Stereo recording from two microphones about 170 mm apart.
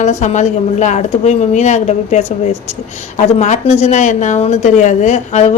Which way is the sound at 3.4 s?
40° left (ahead or behind).